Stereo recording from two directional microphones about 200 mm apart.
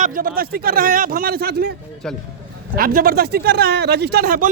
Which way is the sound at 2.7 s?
45° right (ahead or behind).